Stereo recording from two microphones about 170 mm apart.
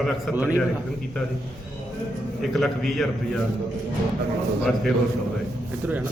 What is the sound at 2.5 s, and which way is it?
Speech, centre (ahead or behind).